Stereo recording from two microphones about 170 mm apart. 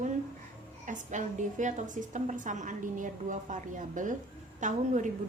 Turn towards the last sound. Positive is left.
turn(degrees=-45)  # may be behind; listen again after turning